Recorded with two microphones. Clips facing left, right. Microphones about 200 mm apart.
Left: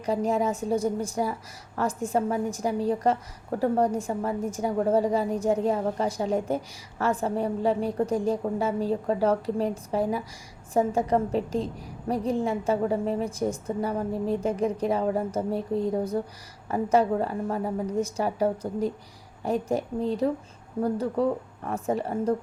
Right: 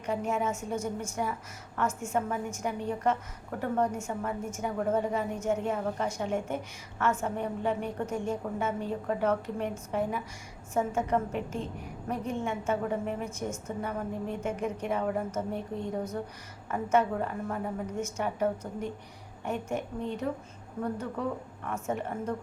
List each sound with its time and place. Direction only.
0.0 s a woman's voice: 35° left (ahead or behind)